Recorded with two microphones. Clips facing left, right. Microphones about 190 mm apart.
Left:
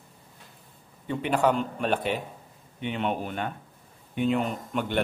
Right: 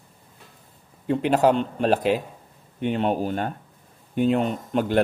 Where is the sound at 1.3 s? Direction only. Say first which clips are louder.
Right 3 dB; 35° right (ahead or behind).